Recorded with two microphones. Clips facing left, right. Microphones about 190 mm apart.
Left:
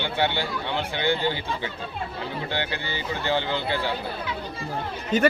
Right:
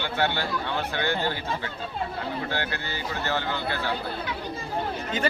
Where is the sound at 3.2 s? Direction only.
15° left (ahead or behind).